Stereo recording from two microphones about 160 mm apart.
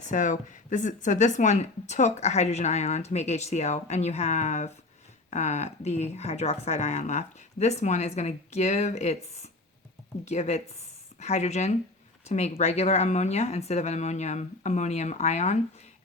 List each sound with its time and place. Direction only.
0.0 s speech: 50° left (ahead or behind)